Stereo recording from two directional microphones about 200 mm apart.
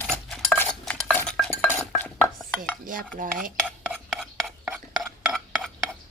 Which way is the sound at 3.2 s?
45° right (ahead or behind).